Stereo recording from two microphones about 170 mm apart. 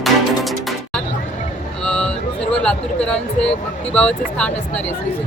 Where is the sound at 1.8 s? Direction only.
5° left (ahead or behind).